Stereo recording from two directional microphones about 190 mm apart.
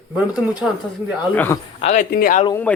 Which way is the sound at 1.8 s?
45° left (ahead or behind).